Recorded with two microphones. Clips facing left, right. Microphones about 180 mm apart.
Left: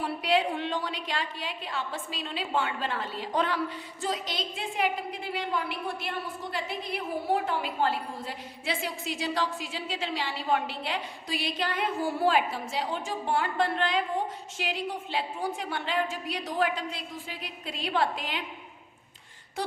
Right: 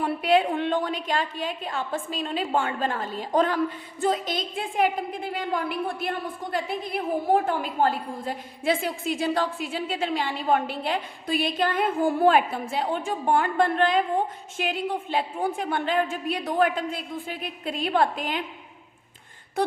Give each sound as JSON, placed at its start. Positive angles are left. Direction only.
{"t": 0.0, "sound": "a woman's voice", "side_deg": -50}